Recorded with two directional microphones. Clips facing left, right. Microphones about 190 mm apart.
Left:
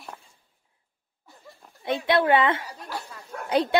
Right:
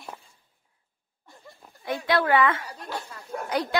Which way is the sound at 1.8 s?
25° left (ahead or behind).